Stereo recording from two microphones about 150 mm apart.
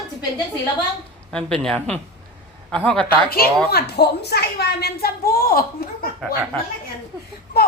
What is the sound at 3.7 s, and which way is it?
A woman's voice, 90° left.